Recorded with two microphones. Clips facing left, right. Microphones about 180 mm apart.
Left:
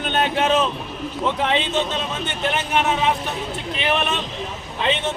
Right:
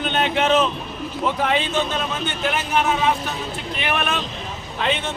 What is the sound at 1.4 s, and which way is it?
Speech, 25° left (ahead or behind).